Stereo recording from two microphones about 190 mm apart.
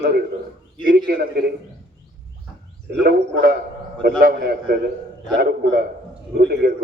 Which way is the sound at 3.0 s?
55° right (ahead or behind).